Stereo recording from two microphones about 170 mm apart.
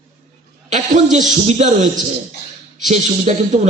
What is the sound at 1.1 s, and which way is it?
Speech, 40° right (ahead or behind).